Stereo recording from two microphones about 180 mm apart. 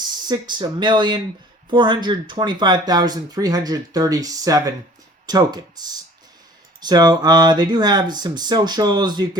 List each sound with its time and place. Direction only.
0.3 s speech: 25° right (ahead or behind)